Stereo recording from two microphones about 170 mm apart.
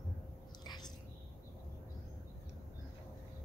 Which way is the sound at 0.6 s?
25° left (ahead or behind).